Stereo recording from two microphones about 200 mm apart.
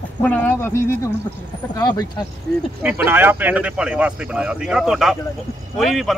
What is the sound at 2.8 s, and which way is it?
Speech, 10° right (ahead or behind).